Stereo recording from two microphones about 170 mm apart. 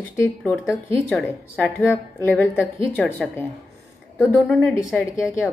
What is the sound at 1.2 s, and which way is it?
Speech, 10° left (ahead or behind).